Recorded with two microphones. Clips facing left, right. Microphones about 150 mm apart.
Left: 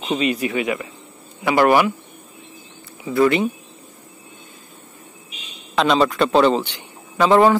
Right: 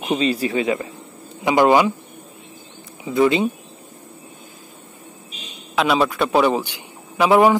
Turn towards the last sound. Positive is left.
turn(degrees=-10)  # may be behind; listen again after turning